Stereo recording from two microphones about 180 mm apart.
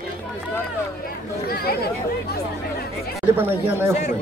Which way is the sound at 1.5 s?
60° left (ahead or behind).